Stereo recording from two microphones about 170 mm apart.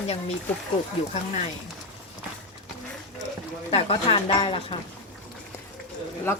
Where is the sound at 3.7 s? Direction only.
35° left (ahead or behind).